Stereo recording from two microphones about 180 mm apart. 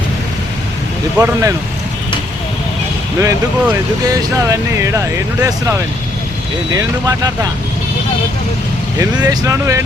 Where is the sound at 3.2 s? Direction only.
15° right (ahead or behind).